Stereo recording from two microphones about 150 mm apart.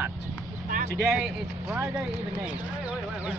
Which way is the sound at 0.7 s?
65° right (ahead or behind).